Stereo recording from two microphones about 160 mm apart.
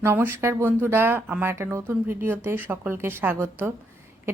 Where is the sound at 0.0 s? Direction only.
15° right (ahead or behind).